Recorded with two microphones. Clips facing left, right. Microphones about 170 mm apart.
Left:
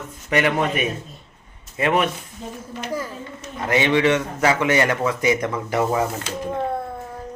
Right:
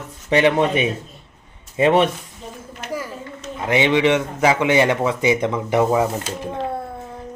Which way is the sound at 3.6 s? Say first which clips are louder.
Right 1 dB; 15° right (ahead or behind).